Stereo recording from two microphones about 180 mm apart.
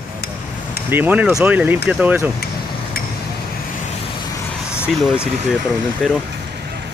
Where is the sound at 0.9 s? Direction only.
10° right (ahead or behind).